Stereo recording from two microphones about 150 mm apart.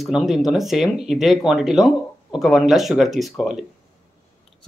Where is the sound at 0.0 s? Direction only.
Centre (ahead or behind).